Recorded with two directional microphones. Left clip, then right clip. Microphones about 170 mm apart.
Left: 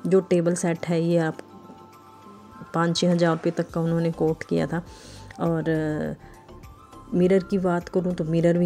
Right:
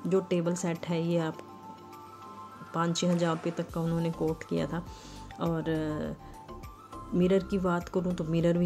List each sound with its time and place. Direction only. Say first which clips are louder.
0.1 s speech: left 8 dB; 35° left (ahead or behind)
2.7 s speech: left 7 dB; 35° left (ahead or behind)
7.2 s speech: left 6 dB; 25° left (ahead or behind)